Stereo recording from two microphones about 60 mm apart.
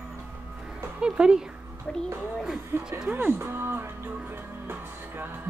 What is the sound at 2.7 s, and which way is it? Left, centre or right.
Speech, right.